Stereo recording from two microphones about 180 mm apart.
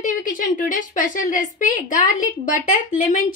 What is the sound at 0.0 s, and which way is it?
A woman's voice, 45° left (ahead or behind).